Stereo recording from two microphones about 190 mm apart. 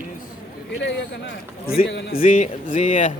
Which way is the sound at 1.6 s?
50° left (ahead or behind).